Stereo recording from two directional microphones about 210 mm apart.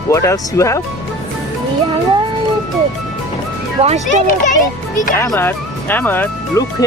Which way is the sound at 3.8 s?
35° right (ahead or behind).